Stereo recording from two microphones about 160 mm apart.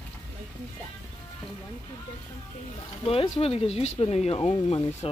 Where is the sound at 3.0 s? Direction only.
40° left (ahead or behind).